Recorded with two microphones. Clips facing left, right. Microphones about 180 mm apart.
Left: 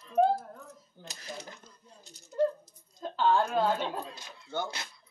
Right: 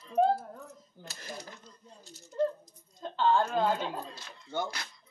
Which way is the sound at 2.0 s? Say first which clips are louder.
Left 2 dB; 15° left (ahead or behind).